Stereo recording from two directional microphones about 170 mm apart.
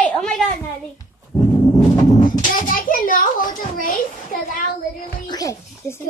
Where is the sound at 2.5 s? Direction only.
55° left (ahead or behind).